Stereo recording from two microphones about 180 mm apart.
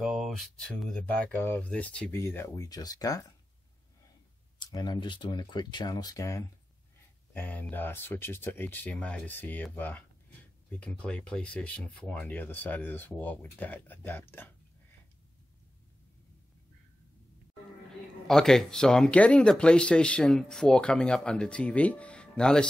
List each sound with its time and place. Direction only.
0.0 s speech: centre (ahead or behind); by 3.3 s 20° left (ahead or behind)
4.6 s speech: 20° left (ahead or behind)
18.2 s speech: centre (ahead or behind)